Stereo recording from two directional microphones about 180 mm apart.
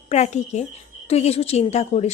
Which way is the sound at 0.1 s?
40° left (ahead or behind).